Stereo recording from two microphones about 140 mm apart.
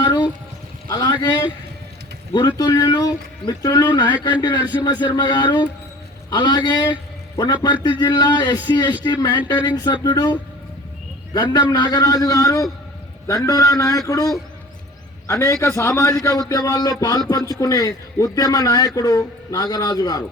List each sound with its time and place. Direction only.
0.0 s a sound: 30° left (ahead or behind)
2.3 s a man's voice: 30° left (ahead or behind)
11.5 s speech: 25° left (ahead or behind)